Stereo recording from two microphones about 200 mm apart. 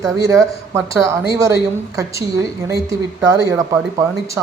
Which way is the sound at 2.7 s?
20° right (ahead or behind).